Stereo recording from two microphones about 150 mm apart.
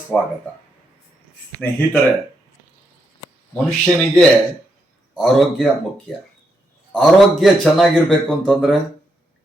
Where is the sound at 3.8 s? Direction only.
5° left (ahead or behind).